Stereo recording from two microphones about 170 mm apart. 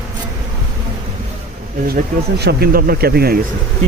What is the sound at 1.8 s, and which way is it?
Speech, 65° right (ahead or behind).